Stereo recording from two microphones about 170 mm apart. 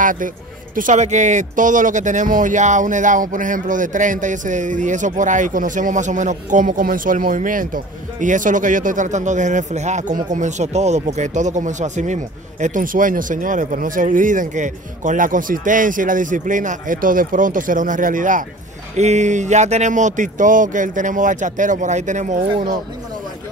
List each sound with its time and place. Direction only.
0.0 s speech: 50° right (ahead or behind)